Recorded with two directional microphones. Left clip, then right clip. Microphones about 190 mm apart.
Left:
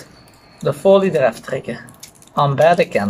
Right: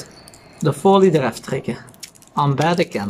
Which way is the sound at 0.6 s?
35° right (ahead or behind).